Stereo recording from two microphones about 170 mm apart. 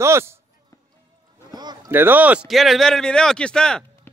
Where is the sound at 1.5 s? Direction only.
25° right (ahead or behind).